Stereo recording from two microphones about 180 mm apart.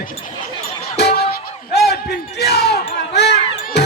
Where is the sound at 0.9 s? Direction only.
70° left (ahead or behind).